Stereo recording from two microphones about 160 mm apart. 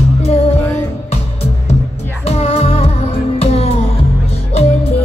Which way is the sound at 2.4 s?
40° left (ahead or behind).